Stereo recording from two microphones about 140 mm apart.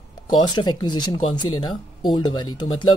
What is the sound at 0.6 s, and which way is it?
Speech, 30° left (ahead or behind).